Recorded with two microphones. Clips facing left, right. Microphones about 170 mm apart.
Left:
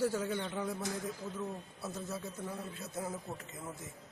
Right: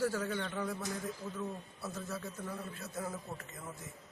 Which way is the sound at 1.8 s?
20° left (ahead or behind).